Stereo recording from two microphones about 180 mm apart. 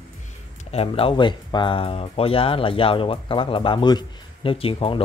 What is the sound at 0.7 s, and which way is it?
Speech, 35° left (ahead or behind).